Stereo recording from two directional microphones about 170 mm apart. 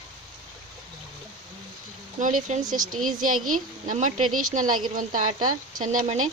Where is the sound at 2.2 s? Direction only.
50° right (ahead or behind).